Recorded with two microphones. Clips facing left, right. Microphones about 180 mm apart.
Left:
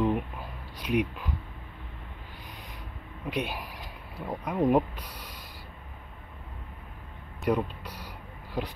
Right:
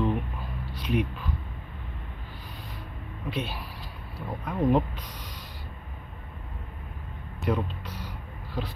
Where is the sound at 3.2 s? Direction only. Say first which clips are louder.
Left 1 dB; 15° left (ahead or behind).